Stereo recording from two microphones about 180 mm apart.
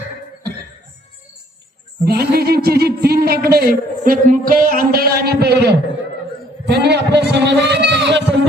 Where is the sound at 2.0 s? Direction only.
60° right (ahead or behind).